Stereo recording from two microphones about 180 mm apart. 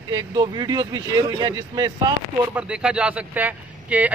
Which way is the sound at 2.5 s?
5° right (ahead or behind).